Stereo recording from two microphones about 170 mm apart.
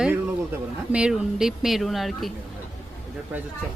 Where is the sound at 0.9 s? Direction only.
5° right (ahead or behind).